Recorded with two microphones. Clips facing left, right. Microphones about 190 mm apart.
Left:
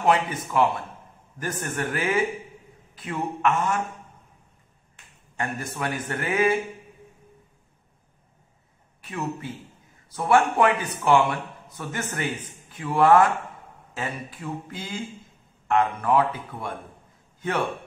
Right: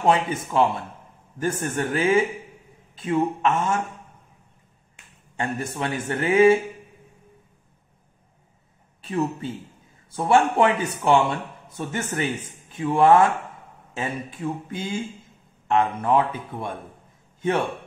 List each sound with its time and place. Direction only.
0.0 s a man's voice: 25° right (ahead or behind)
5.4 s a man's voice: 25° right (ahead or behind)
9.0 s a man's voice: 25° right (ahead or behind)